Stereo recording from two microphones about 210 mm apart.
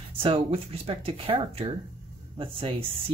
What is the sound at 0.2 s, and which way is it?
Speech, 25° right (ahead or behind).